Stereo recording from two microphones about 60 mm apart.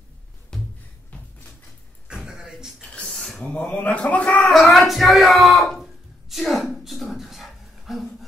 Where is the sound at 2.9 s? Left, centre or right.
Centre.